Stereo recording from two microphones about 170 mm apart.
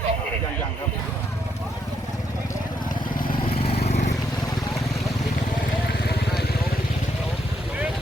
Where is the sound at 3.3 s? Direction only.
30° left (ahead or behind).